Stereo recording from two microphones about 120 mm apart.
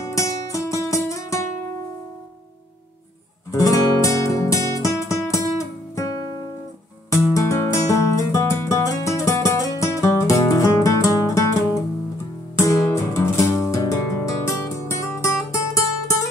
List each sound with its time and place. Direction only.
0.1 s music: 25° left (ahead or behind)
3.5 s music: 30° left (ahead or behind)
5.3 s guitar: 25° left (ahead or behind)
7.1 s music: 25° left (ahead or behind)